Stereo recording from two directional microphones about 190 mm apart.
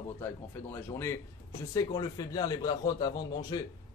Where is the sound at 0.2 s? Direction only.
10° left (ahead or behind).